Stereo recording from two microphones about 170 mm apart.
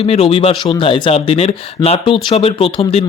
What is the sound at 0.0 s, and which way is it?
Speech, 35° left (ahead or behind).